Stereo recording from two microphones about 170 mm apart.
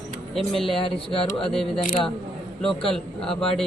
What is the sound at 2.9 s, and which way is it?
Speech, 5° left (ahead or behind).